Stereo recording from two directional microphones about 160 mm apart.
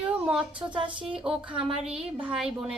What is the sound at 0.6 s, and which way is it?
Speech, 30° right (ahead or behind).